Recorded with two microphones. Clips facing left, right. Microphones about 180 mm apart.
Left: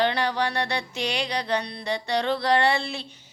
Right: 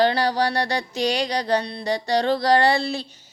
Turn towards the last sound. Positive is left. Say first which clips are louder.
# right 4 dB
turn(degrees=-35)  # may be behind; listen again after turning